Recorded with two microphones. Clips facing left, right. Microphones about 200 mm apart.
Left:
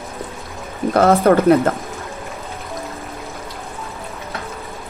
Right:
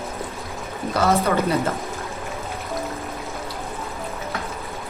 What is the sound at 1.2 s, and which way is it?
Speech, 50° left (ahead or behind).